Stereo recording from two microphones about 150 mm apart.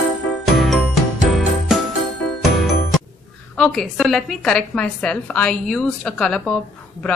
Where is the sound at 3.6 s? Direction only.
5° left (ahead or behind).